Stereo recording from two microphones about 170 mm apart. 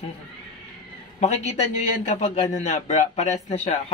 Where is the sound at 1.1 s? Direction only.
40° left (ahead or behind).